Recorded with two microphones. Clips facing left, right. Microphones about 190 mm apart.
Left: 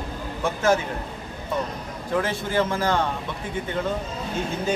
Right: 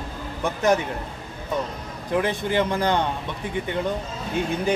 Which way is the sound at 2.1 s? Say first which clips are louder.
Right 1 dB; 15° right (ahead or behind).